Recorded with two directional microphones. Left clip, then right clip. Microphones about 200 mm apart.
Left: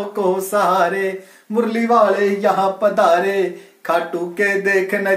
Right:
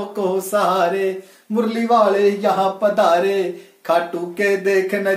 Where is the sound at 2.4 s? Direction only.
15° left (ahead or behind).